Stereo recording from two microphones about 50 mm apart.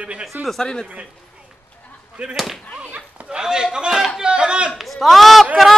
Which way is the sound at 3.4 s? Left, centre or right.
Centre.